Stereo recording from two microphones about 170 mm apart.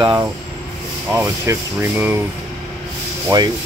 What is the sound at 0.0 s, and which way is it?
Speech, 30° right (ahead or behind).